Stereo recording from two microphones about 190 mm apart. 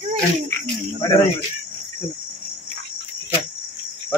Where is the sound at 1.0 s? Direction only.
15° left (ahead or behind).